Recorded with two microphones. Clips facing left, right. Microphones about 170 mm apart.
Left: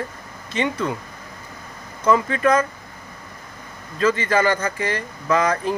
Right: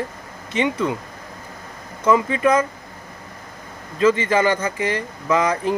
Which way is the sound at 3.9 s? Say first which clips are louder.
Right 2 dB; 20° right (ahead or behind).